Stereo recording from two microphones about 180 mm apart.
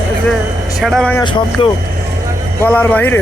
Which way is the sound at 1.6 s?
30° left (ahead or behind).